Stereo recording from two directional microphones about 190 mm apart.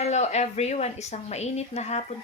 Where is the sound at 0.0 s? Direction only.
35° left (ahead or behind).